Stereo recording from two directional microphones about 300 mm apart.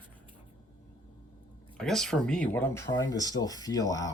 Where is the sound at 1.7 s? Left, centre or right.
Centre.